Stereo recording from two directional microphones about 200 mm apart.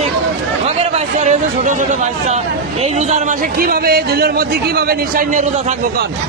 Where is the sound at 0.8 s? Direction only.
35° right (ahead or behind).